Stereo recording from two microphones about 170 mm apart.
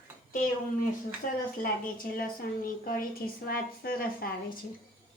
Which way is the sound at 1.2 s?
55° left (ahead or behind).